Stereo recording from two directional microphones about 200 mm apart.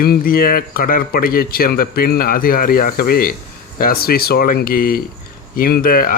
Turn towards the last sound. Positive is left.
turn(degrees=45)  # may be behind; listen again after turning